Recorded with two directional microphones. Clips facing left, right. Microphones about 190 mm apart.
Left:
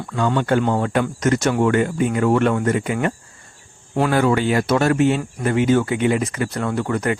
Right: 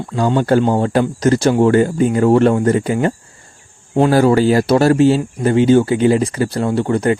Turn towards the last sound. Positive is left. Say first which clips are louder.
# right 6 dB
turn(degrees=-30)  # may be behind; listen again after turning